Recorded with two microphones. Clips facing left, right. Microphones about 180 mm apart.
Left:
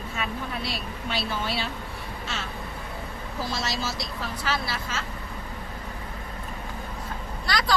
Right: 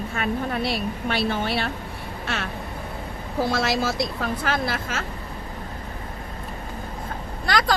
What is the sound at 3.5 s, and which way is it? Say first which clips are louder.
A woman's voice: right 7 dB; 55° right (ahead or behind).